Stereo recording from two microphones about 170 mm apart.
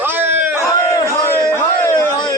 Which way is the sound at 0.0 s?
10° right (ahead or behind).